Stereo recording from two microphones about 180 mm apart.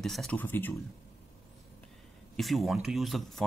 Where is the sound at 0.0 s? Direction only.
Centre (ahead or behind).